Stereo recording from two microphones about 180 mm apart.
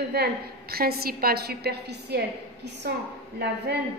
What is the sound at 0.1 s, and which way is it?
A woman's voice, 60° right (ahead or behind).